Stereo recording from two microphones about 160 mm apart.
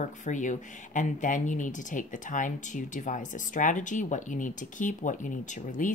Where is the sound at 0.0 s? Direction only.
50° left (ahead or behind).